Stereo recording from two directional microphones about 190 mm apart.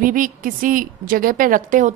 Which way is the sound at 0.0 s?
45° right (ahead or behind).